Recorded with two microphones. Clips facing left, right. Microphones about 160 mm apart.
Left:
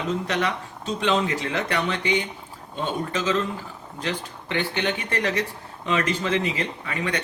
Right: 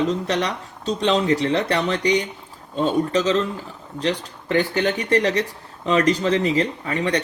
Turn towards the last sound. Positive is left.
turn(degrees=-35)  # may be behind; listen again after turning